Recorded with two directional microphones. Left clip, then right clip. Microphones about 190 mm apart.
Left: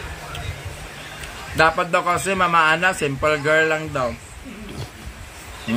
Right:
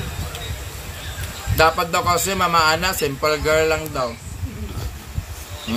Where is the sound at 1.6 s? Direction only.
Centre (ahead or behind).